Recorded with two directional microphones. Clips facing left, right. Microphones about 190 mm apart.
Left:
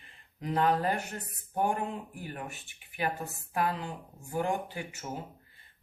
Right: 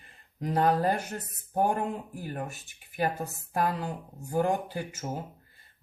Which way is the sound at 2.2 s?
40° right (ahead or behind).